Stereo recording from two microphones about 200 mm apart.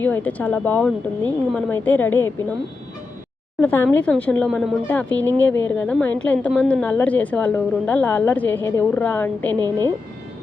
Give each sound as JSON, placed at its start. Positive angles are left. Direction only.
{"t": 0.0, "sound": "a woman's voice", "side_deg": 10}
{"t": 3.6, "sound": "a woman's voice", "side_deg": 5}
{"t": 9.6, "sound": "speech", "side_deg": -20}